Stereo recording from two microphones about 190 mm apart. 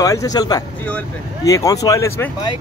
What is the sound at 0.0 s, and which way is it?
Speech, 20° left (ahead or behind).